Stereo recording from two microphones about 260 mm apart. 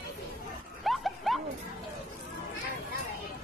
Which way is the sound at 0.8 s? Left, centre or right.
Centre.